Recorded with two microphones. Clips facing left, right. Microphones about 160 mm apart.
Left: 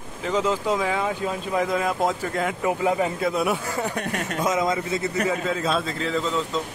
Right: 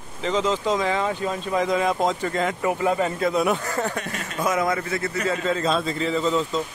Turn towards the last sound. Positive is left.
turn(degrees=0)  # may be behind; listen again after turning